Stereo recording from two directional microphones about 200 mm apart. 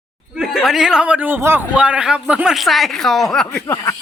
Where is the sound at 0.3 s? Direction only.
Centre (ahead or behind).